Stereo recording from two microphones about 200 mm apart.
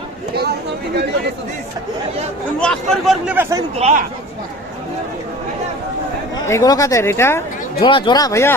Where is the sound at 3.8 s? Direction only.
35° right (ahead or behind).